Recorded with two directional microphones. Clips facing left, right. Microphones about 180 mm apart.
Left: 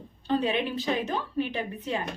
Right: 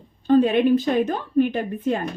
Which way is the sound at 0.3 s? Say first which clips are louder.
Right 10 dB; 50° right (ahead or behind).